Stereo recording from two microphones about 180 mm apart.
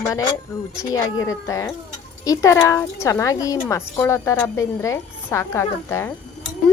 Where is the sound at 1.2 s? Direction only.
20° left (ahead or behind).